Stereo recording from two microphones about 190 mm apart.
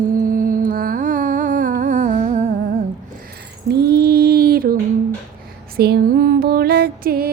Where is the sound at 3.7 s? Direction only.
55° right (ahead or behind).